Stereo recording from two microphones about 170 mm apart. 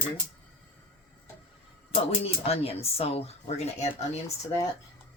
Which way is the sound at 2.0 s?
35° left (ahead or behind).